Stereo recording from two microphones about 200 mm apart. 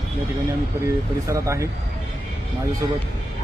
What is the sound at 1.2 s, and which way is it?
Speech, 15° right (ahead or behind).